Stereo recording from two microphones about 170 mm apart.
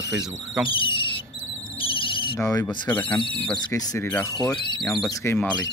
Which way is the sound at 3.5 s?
25° left (ahead or behind).